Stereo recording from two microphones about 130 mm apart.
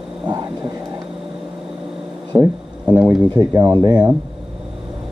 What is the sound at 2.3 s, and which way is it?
Speech, 20° right (ahead or behind).